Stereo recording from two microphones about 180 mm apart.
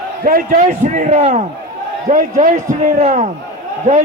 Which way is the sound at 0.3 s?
50° right (ahead or behind).